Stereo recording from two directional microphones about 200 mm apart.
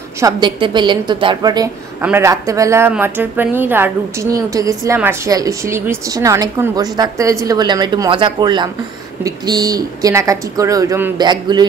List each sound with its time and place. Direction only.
0.2 s a woman's voice: 20° right (ahead or behind)